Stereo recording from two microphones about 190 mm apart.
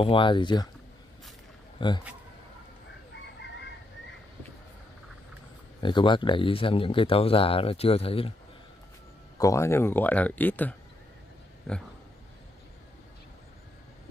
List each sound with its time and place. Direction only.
0.0 s speech: 25° left (ahead or behind)
1.8 s speech: 25° left (ahead or behind)
5.8 s speech: 25° left (ahead or behind)
9.4 s speech: 15° left (ahead or behind)